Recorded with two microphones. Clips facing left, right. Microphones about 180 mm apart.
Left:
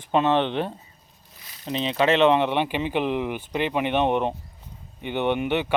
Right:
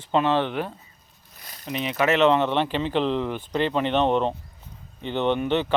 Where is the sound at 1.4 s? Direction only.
45° right (ahead or behind).